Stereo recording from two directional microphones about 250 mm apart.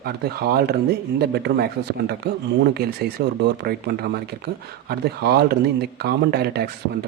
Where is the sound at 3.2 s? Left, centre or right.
Right.